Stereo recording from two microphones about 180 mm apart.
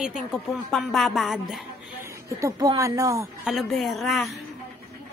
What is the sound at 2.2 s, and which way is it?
A woman's voice, 20° right (ahead or behind).